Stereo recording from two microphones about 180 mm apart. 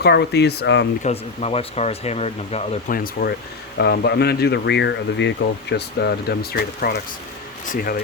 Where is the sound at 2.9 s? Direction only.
55° left (ahead or behind).